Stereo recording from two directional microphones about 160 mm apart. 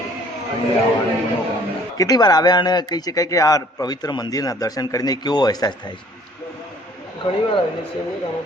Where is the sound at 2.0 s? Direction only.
25° left (ahead or behind).